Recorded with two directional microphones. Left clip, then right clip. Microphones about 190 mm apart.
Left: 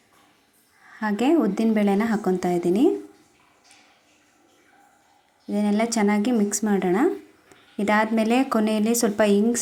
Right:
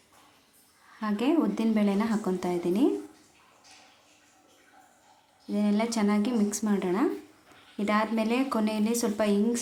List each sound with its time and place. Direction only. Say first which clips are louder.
0.9 s a woman's voice: left 6 dB; 30° left (ahead or behind)
5.5 s a woman's voice: left 5 dB; 30° left (ahead or behind)